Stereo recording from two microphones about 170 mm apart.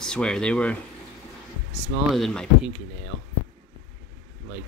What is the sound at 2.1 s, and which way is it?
Speech, centre (ahead or behind).